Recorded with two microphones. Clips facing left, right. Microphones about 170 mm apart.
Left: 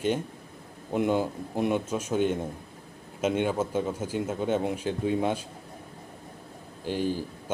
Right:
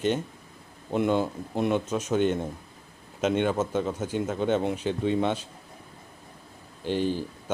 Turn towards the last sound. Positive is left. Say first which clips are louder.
# right 2 dB
turn(degrees=10)  # may be behind; listen again after turning